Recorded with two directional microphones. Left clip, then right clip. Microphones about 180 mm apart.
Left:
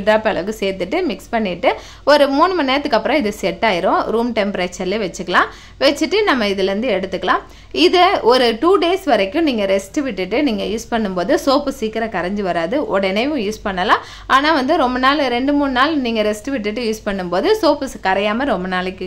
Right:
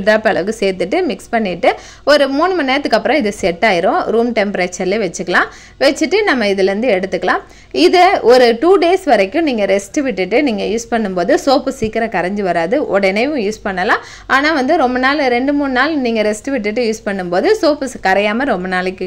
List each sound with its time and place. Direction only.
0.0 s a woman's voice: 20° right (ahead or behind)